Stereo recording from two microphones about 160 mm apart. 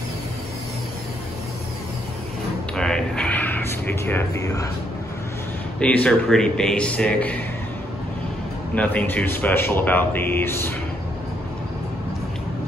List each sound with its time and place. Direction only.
2.7 s a sound: 5° left (ahead or behind)
5.8 s speech: 10° left (ahead or behind)
8.7 s speech: 10° left (ahead or behind)